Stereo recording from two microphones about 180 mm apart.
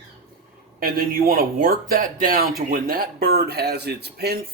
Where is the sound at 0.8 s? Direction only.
55° right (ahead or behind).